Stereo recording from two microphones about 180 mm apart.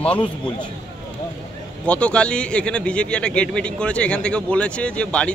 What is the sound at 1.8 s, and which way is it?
A man's voice, 5° left (ahead or behind).